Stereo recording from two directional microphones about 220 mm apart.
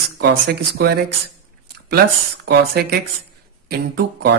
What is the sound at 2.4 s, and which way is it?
Speech, 50° right (ahead or behind).